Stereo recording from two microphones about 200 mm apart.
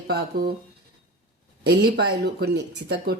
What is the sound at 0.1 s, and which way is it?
Speech, 50° right (ahead or behind).